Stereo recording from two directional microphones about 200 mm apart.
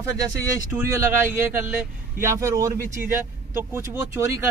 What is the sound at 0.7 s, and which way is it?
Speech, 15° right (ahead or behind).